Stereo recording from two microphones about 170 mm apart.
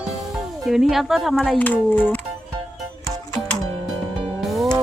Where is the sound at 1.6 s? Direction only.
10° left (ahead or behind).